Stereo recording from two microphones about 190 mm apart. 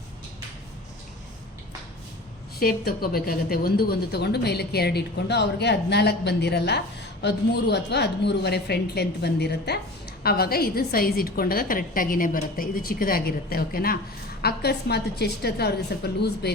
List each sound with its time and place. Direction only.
2.6 s a woman's voice: 50° left (ahead or behind)